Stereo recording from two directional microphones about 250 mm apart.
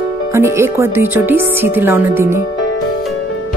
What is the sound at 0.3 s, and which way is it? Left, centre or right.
Music, centre.